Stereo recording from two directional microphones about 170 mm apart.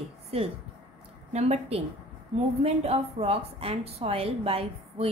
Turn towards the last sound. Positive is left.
turn(degrees=-35)  # may be behind; listen again after turning